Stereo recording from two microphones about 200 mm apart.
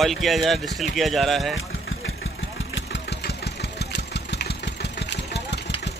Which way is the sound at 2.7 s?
60° left (ahead or behind).